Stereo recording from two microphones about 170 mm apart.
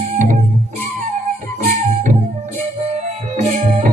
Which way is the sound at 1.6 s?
35° right (ahead or behind).